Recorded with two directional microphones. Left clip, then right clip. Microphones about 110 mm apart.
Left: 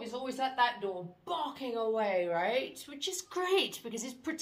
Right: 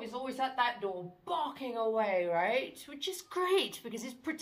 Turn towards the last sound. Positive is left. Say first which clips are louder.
# left 1 dB
turn(degrees=30)  # may be behind; listen again after turning